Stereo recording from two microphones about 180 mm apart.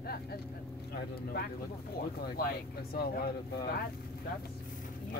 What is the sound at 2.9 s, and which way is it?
Speech, 60° left (ahead or behind).